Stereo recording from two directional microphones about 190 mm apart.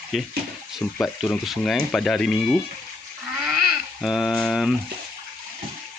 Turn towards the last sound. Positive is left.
turn(degrees=0)  # may be behind; listen again after turning